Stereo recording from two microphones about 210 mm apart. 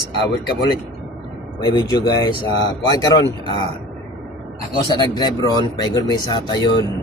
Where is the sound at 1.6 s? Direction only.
20° left (ahead or behind).